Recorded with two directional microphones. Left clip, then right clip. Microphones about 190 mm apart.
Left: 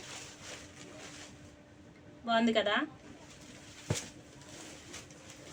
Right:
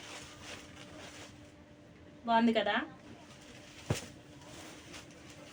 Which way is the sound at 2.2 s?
20° left (ahead or behind).